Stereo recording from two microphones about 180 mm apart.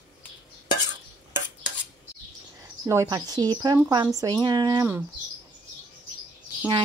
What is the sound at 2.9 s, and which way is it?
A woman's voice, 20° right (ahead or behind).